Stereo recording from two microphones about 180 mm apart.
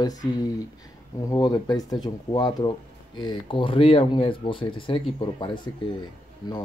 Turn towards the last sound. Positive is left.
turn(degrees=20)  # may be behind; listen again after turning